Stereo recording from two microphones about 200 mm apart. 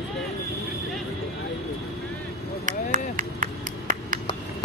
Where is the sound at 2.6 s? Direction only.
40° right (ahead or behind).